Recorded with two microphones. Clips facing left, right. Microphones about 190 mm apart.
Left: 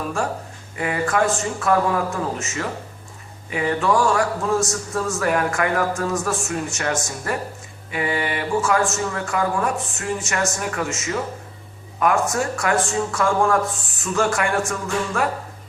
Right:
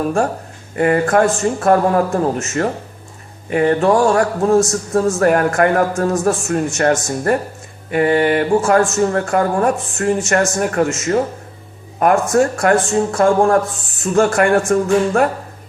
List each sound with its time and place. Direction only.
0.8 s speech: 50° right (ahead or behind)